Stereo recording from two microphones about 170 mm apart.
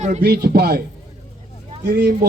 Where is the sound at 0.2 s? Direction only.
65° right (ahead or behind).